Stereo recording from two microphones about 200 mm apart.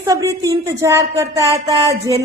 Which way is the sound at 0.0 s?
15° right (ahead or behind).